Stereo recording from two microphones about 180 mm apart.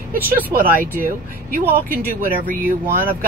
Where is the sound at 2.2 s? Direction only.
50° right (ahead or behind).